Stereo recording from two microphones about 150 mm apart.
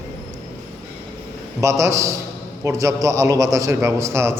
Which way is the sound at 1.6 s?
20° right (ahead or behind).